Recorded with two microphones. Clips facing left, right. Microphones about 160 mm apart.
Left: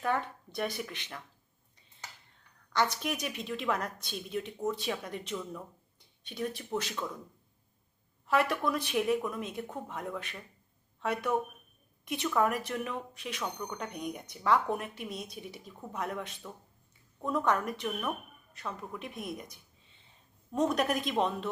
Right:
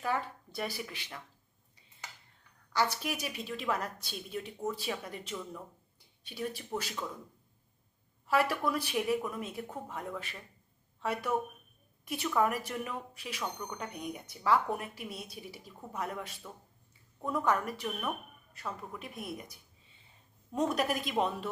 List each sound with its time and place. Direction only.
0.0 s speech: 5° right (ahead or behind)
2.7 s speech: 5° right (ahead or behind)
8.3 s speech: 5° right (ahead or behind)
20.6 s speech: 5° right (ahead or behind)